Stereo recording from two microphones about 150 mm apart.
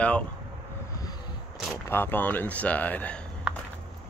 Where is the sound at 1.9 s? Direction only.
15° left (ahead or behind).